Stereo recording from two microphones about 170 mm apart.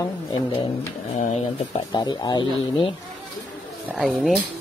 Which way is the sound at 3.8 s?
Centre (ahead or behind).